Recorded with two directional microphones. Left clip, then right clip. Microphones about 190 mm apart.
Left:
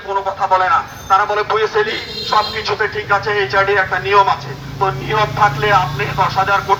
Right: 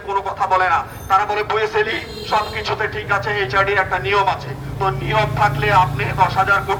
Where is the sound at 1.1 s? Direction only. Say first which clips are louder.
Left 3 dB; 20° right (ahead or behind).